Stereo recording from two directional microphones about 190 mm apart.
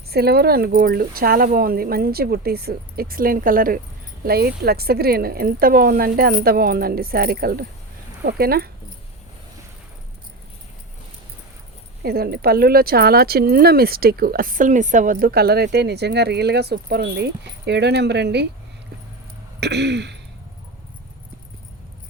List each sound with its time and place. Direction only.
0.1 s speech: 55° right (ahead or behind)
12.0 s speech: 55° right (ahead or behind)
19.5 s throat clearing: 65° right (ahead or behind)